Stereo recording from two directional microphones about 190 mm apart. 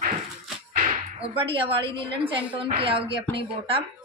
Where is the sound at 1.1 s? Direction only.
30° right (ahead or behind).